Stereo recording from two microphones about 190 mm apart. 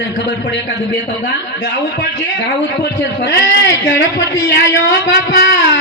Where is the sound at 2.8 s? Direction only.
60° left (ahead or behind).